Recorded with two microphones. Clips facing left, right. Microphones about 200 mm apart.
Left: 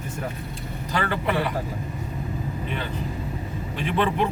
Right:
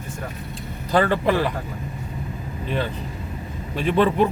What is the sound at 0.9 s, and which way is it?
Speech, 35° right (ahead or behind).